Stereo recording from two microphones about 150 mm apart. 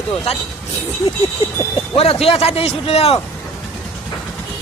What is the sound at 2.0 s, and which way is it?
A man's voice, 40° left (ahead or behind).